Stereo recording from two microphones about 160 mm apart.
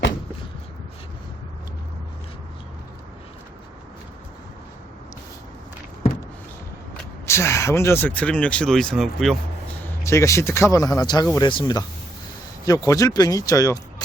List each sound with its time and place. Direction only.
7.3 s speech: 15° left (ahead or behind); by 9.4 s centre (ahead or behind)
10.0 s speech: 20° left (ahead or behind)